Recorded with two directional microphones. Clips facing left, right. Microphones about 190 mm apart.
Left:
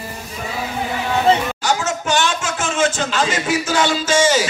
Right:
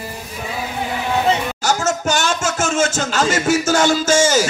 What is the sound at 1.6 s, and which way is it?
Music, 45° right (ahead or behind).